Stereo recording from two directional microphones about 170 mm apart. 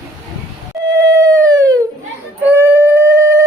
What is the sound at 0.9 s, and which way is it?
Howl, 20° right (ahead or behind).